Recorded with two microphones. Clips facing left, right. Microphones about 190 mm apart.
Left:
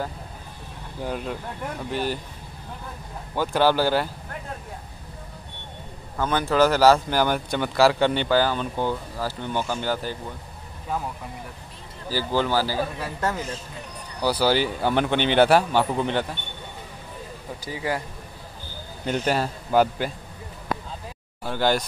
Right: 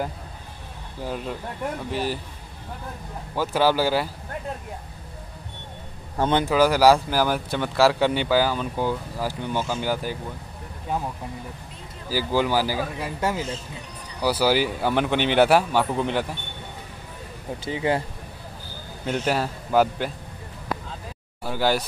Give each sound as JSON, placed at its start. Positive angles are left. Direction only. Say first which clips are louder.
{"t": 1.0, "sound": "speech", "louder": "even", "side_deg": 0}
{"t": 3.3, "sound": "speech", "louder": "even", "side_deg": -5}
{"t": 6.1, "sound": "speech", "louder": "right 3 dB", "side_deg": -25}
{"t": 6.5, "sound": "speech", "louder": "left 1 dB", "side_deg": -10}
{"t": 12.1, "sound": "speech", "louder": "right 1 dB", "side_deg": -10}
{"t": 17.6, "sound": "speech", "louder": "right 4 dB", "side_deg": -25}
{"t": 19.0, "sound": "speech", "louder": "even", "side_deg": -5}
{"t": 21.5, "sound": "speech", "louder": "even", "side_deg": -5}